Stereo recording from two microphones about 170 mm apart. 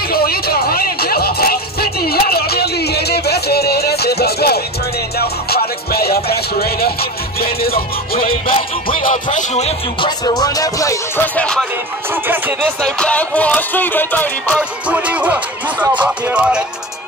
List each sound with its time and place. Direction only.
0.1 s music: 65° left (ahead or behind)
8.5 s music: 35° left (ahead or behind)
9.0 s music: 45° left (ahead or behind)
10.0 s music: 20° left (ahead or behind)
11.3 s speech: 5° left (ahead or behind)
12.8 s music: 5° left (ahead or behind)
14.6 s music: 10° right (ahead or behind)